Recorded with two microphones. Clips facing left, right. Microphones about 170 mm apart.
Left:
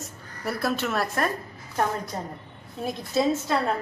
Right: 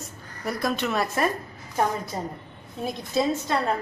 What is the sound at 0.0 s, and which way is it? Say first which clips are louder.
A woman's voice: even; 5° left (ahead or behind).